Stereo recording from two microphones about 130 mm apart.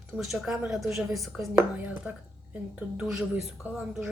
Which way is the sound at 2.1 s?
10° right (ahead or behind).